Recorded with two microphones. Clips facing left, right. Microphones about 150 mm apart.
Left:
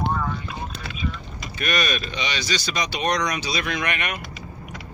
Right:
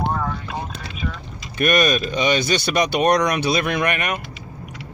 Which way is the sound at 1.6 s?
50° right (ahead or behind).